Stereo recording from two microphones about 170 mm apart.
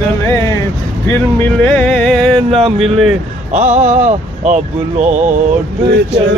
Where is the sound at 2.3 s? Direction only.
35° right (ahead or behind).